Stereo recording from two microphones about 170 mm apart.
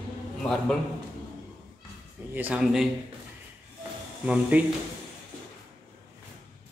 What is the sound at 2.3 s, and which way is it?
Speech, 10° right (ahead or behind).